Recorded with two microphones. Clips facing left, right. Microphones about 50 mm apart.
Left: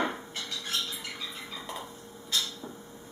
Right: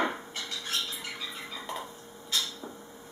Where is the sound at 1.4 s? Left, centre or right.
Centre.